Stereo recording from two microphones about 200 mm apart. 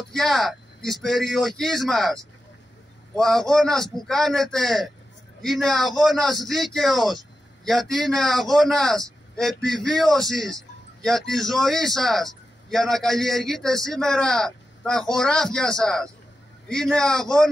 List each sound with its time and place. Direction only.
0.1 s a man's voice: centre (ahead or behind)
3.2 s a man's voice: centre (ahead or behind)